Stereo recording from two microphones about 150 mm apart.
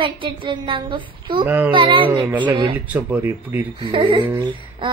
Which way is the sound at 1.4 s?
10° right (ahead or behind).